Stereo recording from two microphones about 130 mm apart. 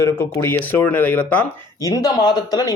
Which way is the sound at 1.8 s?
30° left (ahead or behind).